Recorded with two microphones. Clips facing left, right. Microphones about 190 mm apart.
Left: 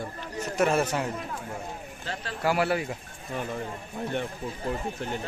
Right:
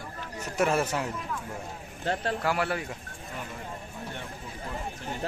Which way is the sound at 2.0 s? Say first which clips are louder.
Right 8 dB; 55° right (ahead or behind).